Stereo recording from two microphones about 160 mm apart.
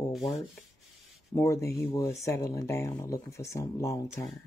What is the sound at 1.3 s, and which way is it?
Speech, 20° left (ahead or behind).